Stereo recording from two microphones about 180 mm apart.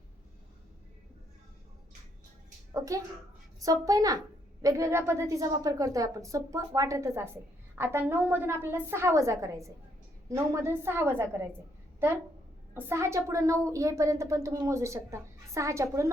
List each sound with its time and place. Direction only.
2.7 s a child's voice: 15° right (ahead or behind)
12.7 s a woman's voice: 15° right (ahead or behind)